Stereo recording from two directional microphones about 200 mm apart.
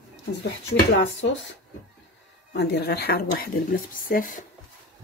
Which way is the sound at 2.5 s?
55° left (ahead or behind).